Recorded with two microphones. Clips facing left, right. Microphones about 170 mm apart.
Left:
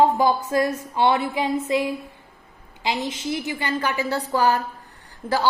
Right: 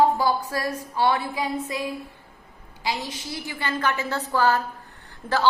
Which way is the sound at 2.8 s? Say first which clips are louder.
Left 4 dB; 20° left (ahead or behind).